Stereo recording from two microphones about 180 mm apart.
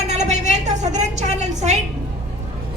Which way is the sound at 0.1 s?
40° right (ahead or behind).